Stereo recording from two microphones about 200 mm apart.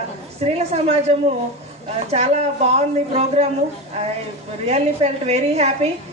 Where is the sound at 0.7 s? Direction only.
35° right (ahead or behind).